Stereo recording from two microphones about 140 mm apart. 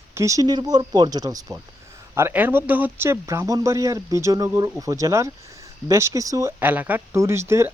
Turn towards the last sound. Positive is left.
turn(degrees=-20)  # may be behind; listen again after turning